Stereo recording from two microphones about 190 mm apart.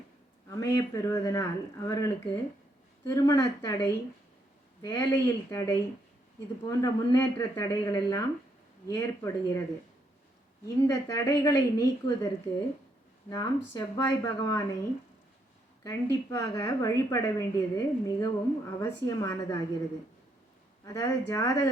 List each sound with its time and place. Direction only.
0.5 s a woman's voice: 15° left (ahead or behind)
10.8 s a woman's voice: 15° left (ahead or behind)
13.3 s a woman's voice: 20° left (ahead or behind)
20.8 s a woman's voice: 15° left (ahead or behind)